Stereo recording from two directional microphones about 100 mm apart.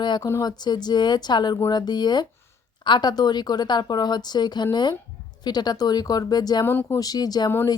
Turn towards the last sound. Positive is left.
turn(degrees=40)  # may be behind; listen again after turning